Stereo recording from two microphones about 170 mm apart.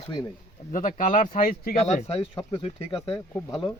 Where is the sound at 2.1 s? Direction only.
30° left (ahead or behind).